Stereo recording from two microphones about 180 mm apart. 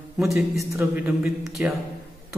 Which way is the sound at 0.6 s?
15° right (ahead or behind).